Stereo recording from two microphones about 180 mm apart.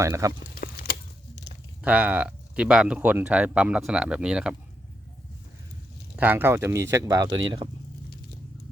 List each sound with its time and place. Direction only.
0.0 s speech: 15° right (ahead or behind)
0.5 s a sound: 55° left (ahead or behind)
1.8 s speech: 10° right (ahead or behind)
6.1 s speech: 10° right (ahead or behind)